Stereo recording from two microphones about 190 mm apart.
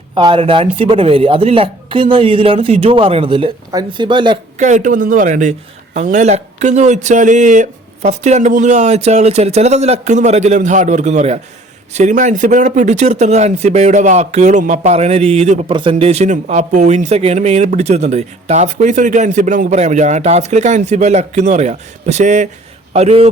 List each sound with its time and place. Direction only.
0.1 s speech: 25° right (ahead or behind)
4.5 s a man's voice: 40° right (ahead or behind)